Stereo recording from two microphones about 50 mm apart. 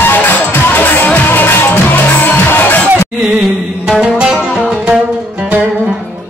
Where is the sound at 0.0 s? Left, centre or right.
Left.